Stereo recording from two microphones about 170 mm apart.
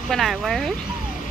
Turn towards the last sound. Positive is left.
turn(degrees=0)  # may be behind; listen again after turning